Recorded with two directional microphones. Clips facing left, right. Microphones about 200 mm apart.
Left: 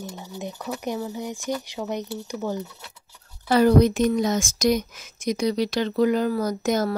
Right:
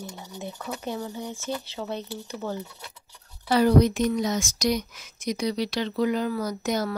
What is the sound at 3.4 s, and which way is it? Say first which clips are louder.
Speech: left 2 dB; 50° left (ahead or behind).